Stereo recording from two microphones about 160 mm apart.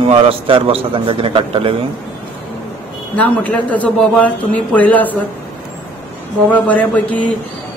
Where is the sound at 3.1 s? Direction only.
10° left (ahead or behind).